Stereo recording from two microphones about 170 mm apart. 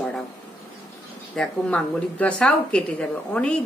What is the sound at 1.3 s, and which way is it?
A woman's voice, 5° left (ahead or behind).